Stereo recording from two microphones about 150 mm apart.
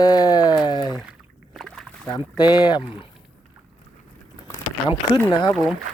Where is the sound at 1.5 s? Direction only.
Centre (ahead or behind).